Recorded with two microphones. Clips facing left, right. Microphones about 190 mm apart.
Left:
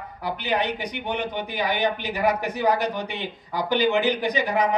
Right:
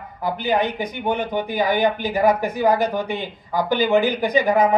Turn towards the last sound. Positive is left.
turn(degrees=-50)  # may be behind; listen again after turning